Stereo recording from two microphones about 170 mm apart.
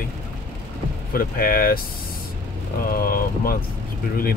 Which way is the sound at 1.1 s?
55° left (ahead or behind).